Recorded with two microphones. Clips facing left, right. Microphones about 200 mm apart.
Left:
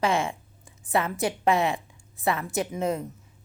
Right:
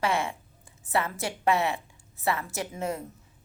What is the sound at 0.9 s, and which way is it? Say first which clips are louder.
A woman's voice: left 4 dB; 15° left (ahead or behind).